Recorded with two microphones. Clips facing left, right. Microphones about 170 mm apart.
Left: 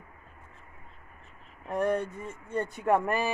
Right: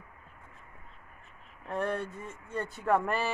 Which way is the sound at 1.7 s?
15° left (ahead or behind).